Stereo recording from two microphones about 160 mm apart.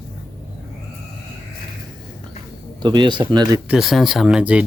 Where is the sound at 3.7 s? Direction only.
Centre (ahead or behind).